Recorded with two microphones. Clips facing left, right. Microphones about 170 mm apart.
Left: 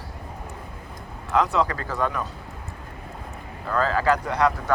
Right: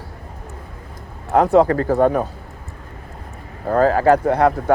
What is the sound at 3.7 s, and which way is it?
Speech, 50° right (ahead or behind).